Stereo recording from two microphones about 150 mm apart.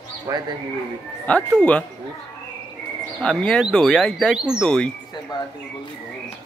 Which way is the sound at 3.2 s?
5° left (ahead or behind).